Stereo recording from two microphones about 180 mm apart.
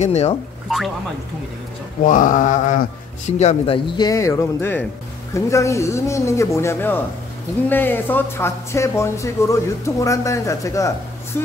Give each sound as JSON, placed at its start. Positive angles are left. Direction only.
{"t": 0.0, "sound": "speech", "side_deg": 35}
{"t": 0.7, "sound": "speech", "side_deg": 0}
{"t": 2.0, "sound": "mantra", "side_deg": 45}
{"t": 3.3, "sound": "speech", "side_deg": 40}